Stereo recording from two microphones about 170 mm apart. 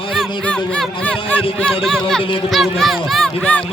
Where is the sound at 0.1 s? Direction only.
5° left (ahead or behind).